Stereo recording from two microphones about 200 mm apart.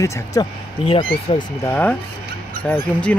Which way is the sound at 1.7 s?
10° left (ahead or behind).